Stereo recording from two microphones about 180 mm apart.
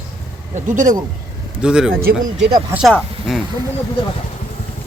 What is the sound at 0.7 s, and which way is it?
Speech, 45° right (ahead or behind).